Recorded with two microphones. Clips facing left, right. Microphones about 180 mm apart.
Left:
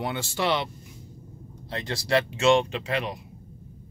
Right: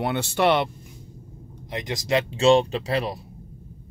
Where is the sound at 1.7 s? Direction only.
15° right (ahead or behind).